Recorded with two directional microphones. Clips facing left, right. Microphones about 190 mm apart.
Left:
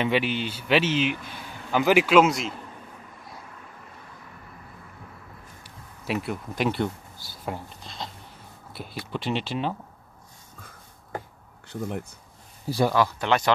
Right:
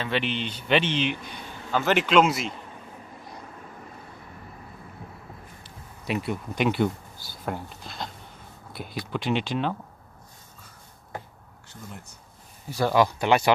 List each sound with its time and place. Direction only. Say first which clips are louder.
0.0 s speech: left 3 dB; 10° left (ahead or behind)
6.0 s speech: even; centre (ahead or behind)
11.7 s speech: left 12 dB; 60° left (ahead or behind)
12.9 s speech: right 2 dB; 15° right (ahead or behind)